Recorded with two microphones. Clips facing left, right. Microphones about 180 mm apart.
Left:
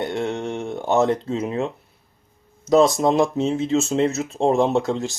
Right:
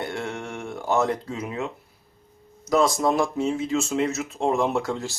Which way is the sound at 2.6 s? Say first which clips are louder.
Left 5 dB; 25° left (ahead or behind).